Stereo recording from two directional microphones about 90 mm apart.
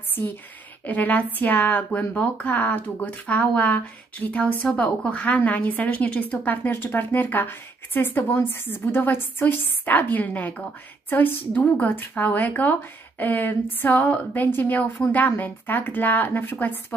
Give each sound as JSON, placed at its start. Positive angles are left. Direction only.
{"t": 0.8, "sound": "a woman's voice", "side_deg": 20}